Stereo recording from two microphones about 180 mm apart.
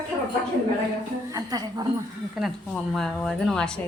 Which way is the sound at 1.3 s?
20° right (ahead or behind).